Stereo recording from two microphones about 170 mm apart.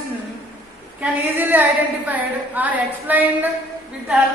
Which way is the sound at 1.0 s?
10° right (ahead or behind).